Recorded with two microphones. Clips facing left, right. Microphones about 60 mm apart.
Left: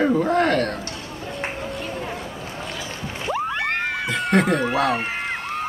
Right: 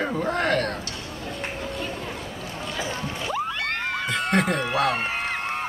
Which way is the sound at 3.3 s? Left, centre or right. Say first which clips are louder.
Left 5 dB; left.